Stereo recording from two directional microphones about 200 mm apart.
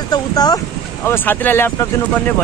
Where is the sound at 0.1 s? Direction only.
20° left (ahead or behind).